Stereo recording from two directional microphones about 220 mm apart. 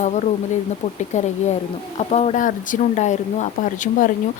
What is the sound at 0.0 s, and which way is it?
A woman's voice, 30° left (ahead or behind).